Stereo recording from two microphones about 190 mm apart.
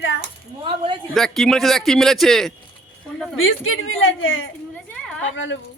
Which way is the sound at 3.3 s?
90° left.